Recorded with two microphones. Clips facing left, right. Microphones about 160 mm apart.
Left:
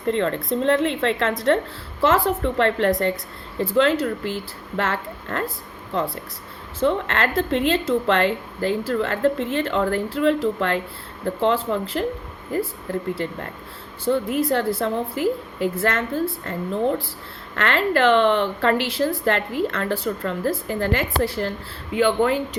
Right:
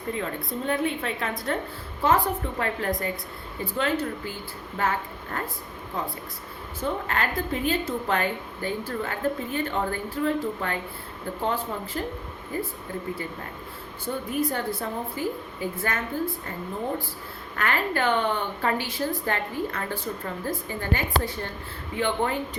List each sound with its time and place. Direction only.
0.1 s a woman's voice: 90° left
2.0 s a woman's voice: 75° left (ahead or behind)
3.6 s a woman's voice: 90° left
6.7 s a woman's voice: 90° left
14.0 s a woman's voice: 90° left
21.9 s a woman's voice: 90° left